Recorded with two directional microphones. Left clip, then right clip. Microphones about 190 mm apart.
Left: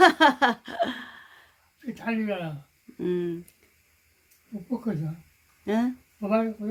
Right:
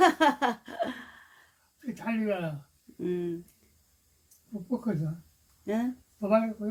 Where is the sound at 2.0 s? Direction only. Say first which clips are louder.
Left 1 dB; 5° left (ahead or behind).